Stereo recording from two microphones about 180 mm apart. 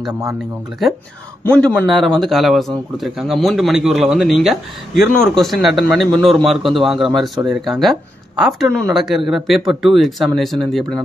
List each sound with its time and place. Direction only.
0.0 s speech: 15° right (ahead or behind)
1.5 s speech: 5° left (ahead or behind)